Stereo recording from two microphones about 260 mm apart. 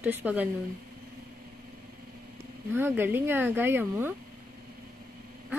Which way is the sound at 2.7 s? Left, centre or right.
Centre.